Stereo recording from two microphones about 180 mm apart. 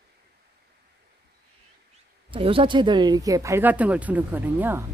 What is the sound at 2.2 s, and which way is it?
Speech, 30° right (ahead or behind).